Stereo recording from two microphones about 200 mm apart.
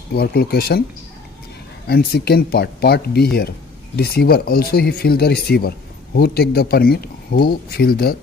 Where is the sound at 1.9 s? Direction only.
50° left (ahead or behind).